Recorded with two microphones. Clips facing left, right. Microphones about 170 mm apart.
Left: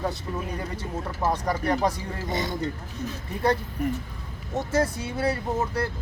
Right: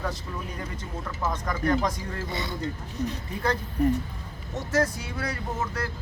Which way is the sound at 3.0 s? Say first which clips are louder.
Right 4 dB; 40° right (ahead or behind).